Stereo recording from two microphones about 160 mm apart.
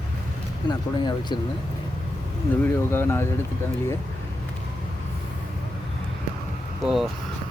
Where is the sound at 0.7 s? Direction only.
25° left (ahead or behind).